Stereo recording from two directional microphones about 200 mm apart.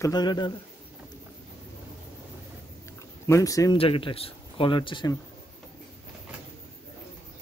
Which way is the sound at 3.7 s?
25° left (ahead or behind).